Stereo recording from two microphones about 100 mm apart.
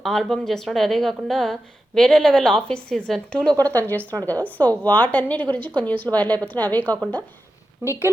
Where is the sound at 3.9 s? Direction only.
15° left (ahead or behind).